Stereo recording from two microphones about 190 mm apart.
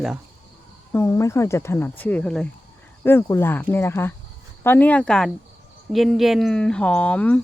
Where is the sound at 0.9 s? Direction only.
15° left (ahead or behind).